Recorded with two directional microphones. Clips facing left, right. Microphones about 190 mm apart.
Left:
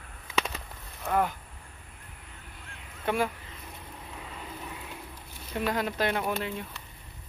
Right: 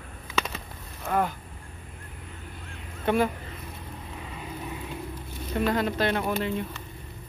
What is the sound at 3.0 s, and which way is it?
Speech, 5° left (ahead or behind).